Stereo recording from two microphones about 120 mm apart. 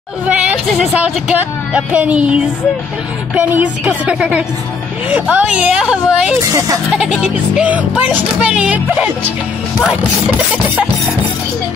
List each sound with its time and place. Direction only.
0.7 s speech: 10° right (ahead or behind)
6.4 s speech: 30° right (ahead or behind)
6.9 s speech: 5° right (ahead or behind)